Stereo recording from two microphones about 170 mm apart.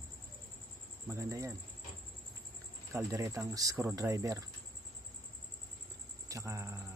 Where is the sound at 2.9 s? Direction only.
15° right (ahead or behind).